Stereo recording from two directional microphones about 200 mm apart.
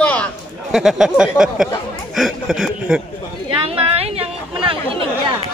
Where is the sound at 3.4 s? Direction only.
30° right (ahead or behind).